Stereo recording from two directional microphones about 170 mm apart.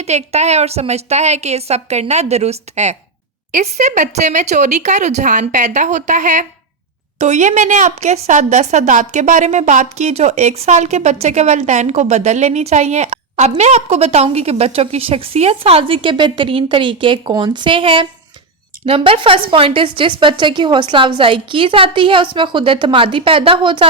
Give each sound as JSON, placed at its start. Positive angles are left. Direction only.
{"t": 0.0, "sound": "a woman's voice", "side_deg": -40}